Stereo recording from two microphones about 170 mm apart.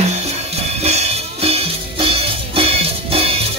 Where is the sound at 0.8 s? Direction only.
40° right (ahead or behind).